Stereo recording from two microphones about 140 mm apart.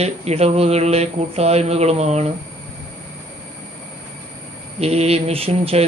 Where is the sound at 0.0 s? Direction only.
50° right (ahead or behind).